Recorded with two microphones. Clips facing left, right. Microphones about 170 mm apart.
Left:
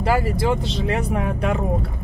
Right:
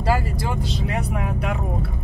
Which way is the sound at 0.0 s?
20° left (ahead or behind).